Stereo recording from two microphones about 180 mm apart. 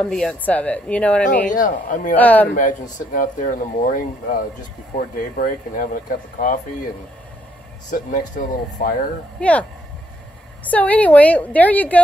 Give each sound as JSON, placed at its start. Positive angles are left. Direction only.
{"t": 0.0, "sound": "a woman's voice", "side_deg": 5}
{"t": 1.5, "sound": "speech", "side_deg": 45}
{"t": 2.1, "sound": "a woman's voice", "side_deg": 10}
{"t": 2.5, "sound": "speech", "side_deg": 50}
{"t": 7.9, "sound": "speech", "side_deg": 45}
{"t": 9.4, "sound": "a woman's voice", "side_deg": 5}